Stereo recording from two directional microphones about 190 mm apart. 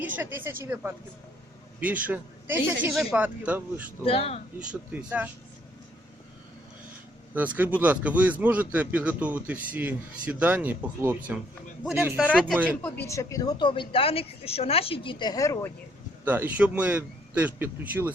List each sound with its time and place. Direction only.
0.2 s a man's voice: 10° right (ahead or behind)
4.0 s speech: 30° left (ahead or behind)
4.7 s a man's voice: 5° right (ahead or behind)
7.3 s a man's voice: 10° right (ahead or behind)
12.3 s speech: 5° left (ahead or behind)
16.2 s a man's voice: 10° right (ahead or behind)